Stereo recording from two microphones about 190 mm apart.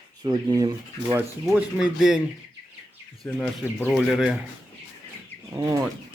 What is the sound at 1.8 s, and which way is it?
Speech, 5° right (ahead or behind).